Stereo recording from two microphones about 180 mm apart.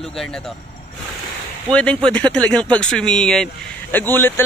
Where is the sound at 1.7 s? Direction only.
5° left (ahead or behind).